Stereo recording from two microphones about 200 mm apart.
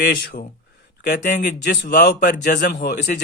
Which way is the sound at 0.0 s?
45° left (ahead or behind).